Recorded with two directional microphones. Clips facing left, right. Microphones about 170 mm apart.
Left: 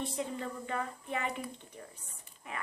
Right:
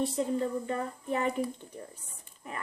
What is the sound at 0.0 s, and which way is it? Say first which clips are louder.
Speech: right 7 dB; 40° right (ahead or behind).